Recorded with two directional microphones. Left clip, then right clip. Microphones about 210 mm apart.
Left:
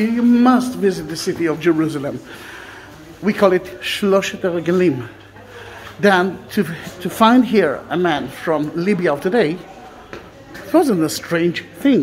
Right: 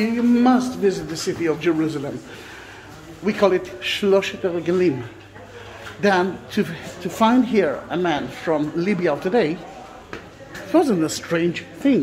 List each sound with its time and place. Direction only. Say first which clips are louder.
0.0 s a woman's voice: left 3 dB; 15° left (ahead or behind)
3.3 s a man's voice: left 3 dB; 25° left (ahead or behind)
5.9 s a woman's voice: left 4 dB; 20° left (ahead or behind)
10.7 s a woman's voice: left 3 dB; 15° left (ahead or behind)